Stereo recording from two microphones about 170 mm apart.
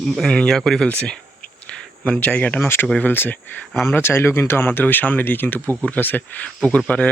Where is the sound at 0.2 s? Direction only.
5° left (ahead or behind).